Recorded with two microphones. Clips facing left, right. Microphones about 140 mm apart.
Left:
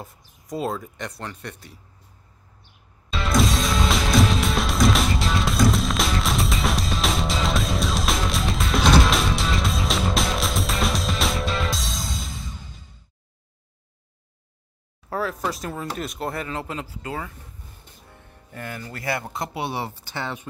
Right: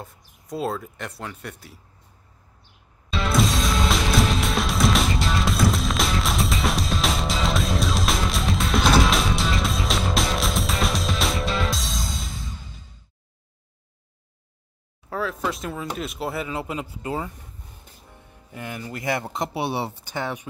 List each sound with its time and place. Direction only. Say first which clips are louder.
0.0 s speech: even; centre (ahead or behind)
3.1 s music: even; centre (ahead or behind)
15.0 s a sound: left 1 dB; centre (ahead or behind)
15.5 s speech: even; centre (ahead or behind)